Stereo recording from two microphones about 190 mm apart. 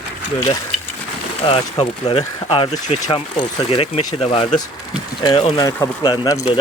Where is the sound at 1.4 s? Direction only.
30° left (ahead or behind).